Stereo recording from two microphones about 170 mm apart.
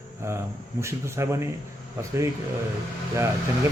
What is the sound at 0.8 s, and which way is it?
Speech, 15° right (ahead or behind).